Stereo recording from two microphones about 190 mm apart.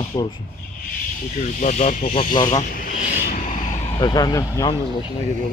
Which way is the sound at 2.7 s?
45° left (ahead or behind).